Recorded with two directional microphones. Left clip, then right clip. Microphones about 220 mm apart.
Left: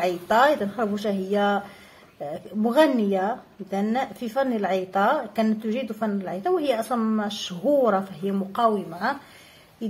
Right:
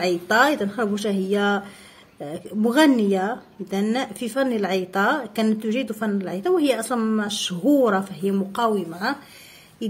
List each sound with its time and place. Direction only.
0.0 s a woman's voice: 35° right (ahead or behind)